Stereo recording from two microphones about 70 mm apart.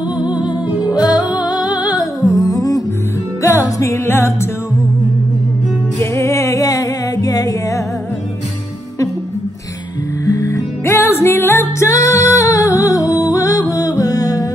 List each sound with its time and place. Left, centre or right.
0.3 s music: centre
0.9 s music: left
3.8 s music: left
5.9 s music: left
10.2 s music: left
11.0 s music: left